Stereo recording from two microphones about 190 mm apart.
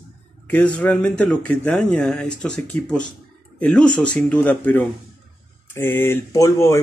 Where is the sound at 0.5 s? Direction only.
5° left (ahead or behind).